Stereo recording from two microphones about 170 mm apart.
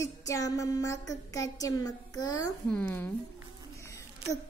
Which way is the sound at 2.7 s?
10° left (ahead or behind).